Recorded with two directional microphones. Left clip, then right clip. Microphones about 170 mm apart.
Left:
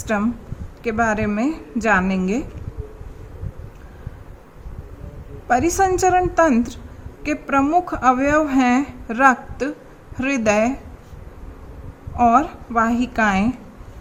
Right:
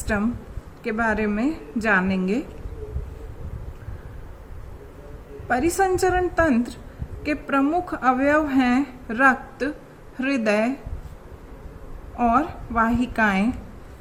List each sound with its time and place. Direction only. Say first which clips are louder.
0.0 s speech: left 3 dB; 30° left (ahead or behind)
5.5 s a woman's voice: left 4 dB; 30° left (ahead or behind)
12.1 s a woman's voice: left 5 dB; 30° left (ahead or behind)